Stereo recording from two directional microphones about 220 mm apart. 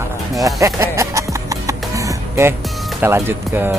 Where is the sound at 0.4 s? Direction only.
15° right (ahead or behind).